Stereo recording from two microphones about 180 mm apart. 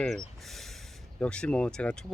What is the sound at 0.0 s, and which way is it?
Speech, centre (ahead or behind).